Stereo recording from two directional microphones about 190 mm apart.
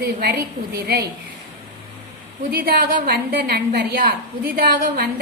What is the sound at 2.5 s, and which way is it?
A woman's voice, 50° right (ahead or behind).